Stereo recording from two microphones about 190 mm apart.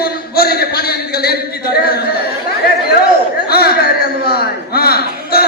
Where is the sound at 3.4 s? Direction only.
55° left (ahead or behind).